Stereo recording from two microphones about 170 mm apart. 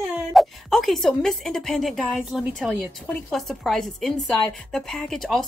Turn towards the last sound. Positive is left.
turn(degrees=0)  # may be behind; listen again after turning